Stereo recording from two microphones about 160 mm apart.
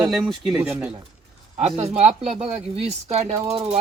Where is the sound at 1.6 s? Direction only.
45° right (ahead or behind).